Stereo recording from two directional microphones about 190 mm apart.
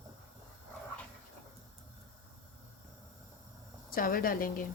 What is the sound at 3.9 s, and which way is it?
Speech, 50° left (ahead or behind).